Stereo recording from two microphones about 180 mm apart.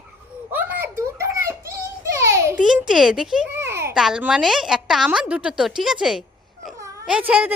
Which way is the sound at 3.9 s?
5° right (ahead or behind).